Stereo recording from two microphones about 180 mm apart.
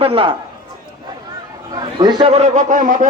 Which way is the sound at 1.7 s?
20° right (ahead or behind).